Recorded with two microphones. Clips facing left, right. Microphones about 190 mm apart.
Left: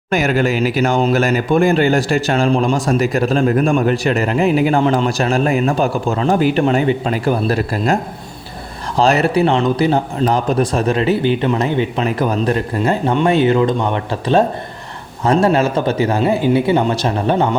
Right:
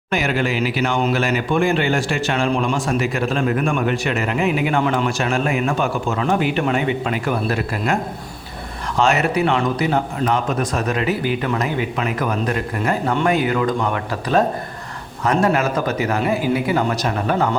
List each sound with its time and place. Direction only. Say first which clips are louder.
0.1 s speech: left 5 dB; 45° left (ahead or behind)
9.0 s speech: left 4 dB; 35° left (ahead or behind)